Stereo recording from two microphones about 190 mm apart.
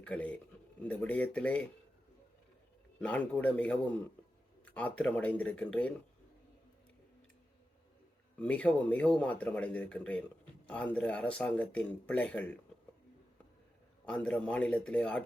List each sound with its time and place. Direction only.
0.0 s speech: 5° left (ahead or behind)
3.0 s speech: 5° left (ahead or behind)
8.4 s speech: 5° left (ahead or behind)
14.0 s a man's voice: 5° left (ahead or behind)